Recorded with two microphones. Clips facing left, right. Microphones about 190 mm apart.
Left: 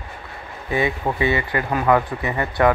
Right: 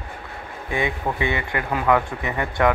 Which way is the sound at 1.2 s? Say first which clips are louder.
Left 4 dB; 15° right (ahead or behind).